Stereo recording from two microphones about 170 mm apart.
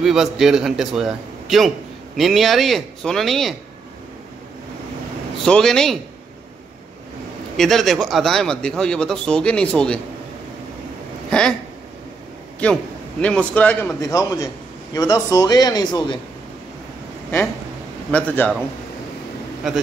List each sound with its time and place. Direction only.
0.0 s a man's voice: centre (ahead or behind)
5.4 s a man's voice: centre (ahead or behind)
7.5 s a man's voice: centre (ahead or behind)
11.2 s speech: 5° left (ahead or behind)
12.6 s a man's voice: 5° left (ahead or behind); by 16.2 s 25° left (ahead or behind)
18.1 s a man's voice: 10° left (ahead or behind)